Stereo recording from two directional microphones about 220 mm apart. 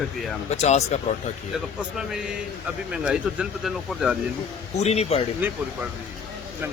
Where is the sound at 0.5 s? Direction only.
30° left (ahead or behind).